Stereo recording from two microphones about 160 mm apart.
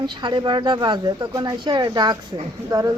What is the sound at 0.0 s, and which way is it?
Speech, 30° right (ahead or behind).